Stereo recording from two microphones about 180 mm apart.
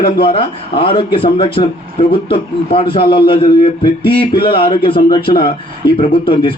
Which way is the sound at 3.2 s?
30° left (ahead or behind).